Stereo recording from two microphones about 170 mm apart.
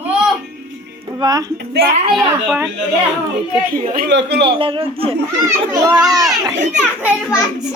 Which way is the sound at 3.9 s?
85° right.